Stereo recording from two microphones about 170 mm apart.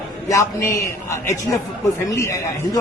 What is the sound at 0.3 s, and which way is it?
A man's voice, 20° left (ahead or behind).